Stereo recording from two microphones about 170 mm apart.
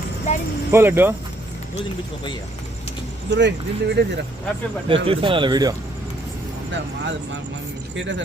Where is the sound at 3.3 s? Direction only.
90° right.